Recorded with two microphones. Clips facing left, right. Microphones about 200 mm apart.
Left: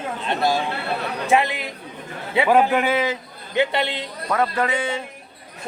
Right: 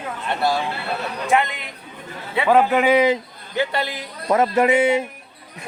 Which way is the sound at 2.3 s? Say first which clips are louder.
Even; 15° left (ahead or behind).